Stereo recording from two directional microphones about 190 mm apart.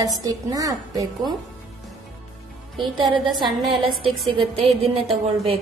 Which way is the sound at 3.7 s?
25° right (ahead or behind).